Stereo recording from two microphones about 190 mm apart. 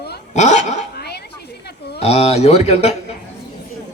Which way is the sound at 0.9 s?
60° left (ahead or behind).